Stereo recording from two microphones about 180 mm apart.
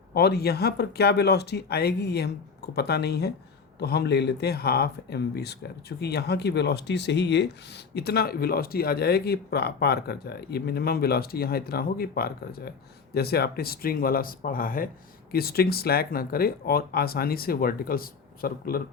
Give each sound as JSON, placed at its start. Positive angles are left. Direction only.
{"t": 0.1, "sound": "speech", "side_deg": 65}